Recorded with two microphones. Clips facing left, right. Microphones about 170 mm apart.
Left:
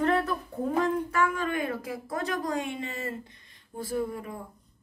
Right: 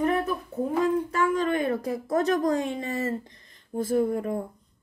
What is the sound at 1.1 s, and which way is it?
A woman's voice, 35° right (ahead or behind).